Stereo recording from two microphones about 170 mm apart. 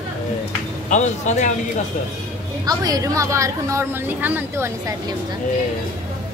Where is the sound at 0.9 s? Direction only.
45° left (ahead or behind).